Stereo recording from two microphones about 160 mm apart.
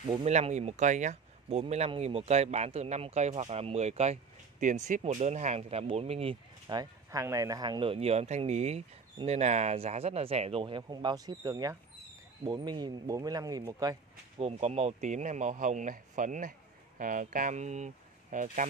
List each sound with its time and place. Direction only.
0.2 s speech: 45° right (ahead or behind); by 13.9 s 25° right (ahead or behind)
14.4 s speech: 40° right (ahead or behind)